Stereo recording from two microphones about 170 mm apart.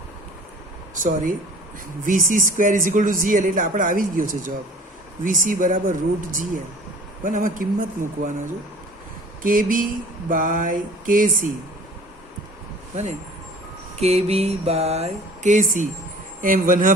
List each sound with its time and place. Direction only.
1.0 s speech: 55° right (ahead or behind)
9.4 s speech: 55° right (ahead or behind)
14.0 s a sound: 35° right (ahead or behind)
16.4 s speech: 55° right (ahead or behind)